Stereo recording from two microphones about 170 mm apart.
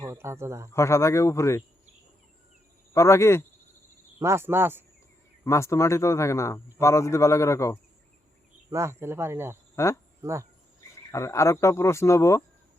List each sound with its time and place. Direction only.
0.0 s speech: 15° right (ahead or behind)
0.7 s a man's voice: 15° left (ahead or behind)
2.9 s a man's voice: 15° left (ahead or behind)
4.2 s speech: 15° right (ahead or behind)
5.5 s a man's voice: 15° left (ahead or behind)
8.7 s speech: 15° right (ahead or behind)
9.7 s a man's voice: 15° left (ahead or behind)
10.2 s speech: 15° right (ahead or behind)
11.1 s a man's voice: 15° left (ahead or behind)